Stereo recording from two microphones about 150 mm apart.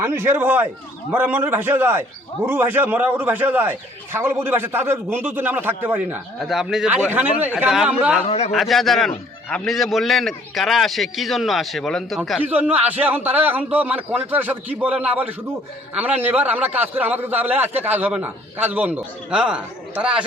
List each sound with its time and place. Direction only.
0.0 s a man's voice: 15° right (ahead or behind)
6.4 s a man's voice: 5° right (ahead or behind)
8.2 s speech: 45° left (ahead or behind)
8.5 s a man's voice: centre (ahead or behind)
12.4 s a man's voice: 10° right (ahead or behind)